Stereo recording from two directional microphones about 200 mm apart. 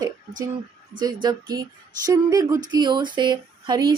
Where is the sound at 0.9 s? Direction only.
20° right (ahead or behind).